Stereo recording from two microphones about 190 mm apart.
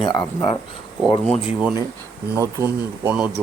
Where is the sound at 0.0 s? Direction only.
20° left (ahead or behind).